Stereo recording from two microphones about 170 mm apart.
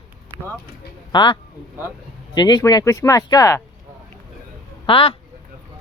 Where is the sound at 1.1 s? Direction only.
25° left (ahead or behind).